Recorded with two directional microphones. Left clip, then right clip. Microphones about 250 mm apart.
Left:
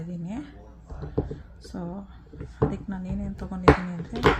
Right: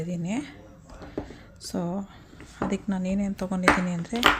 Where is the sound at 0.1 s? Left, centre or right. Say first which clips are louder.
Right 5 dB; right.